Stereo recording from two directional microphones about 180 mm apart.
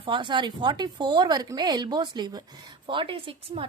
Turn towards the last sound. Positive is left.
turn(degrees=-30)  # may be behind; listen again after turning